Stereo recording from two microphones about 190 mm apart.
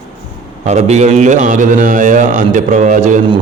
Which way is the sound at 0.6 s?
35° right (ahead or behind).